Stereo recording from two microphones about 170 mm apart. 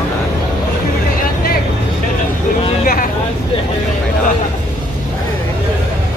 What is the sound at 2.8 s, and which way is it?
Vehicle, 55° left (ahead or behind).